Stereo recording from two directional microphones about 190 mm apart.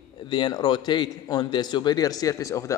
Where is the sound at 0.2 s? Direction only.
25° left (ahead or behind).